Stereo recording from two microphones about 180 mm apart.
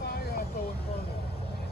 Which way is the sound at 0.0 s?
60° left (ahead or behind).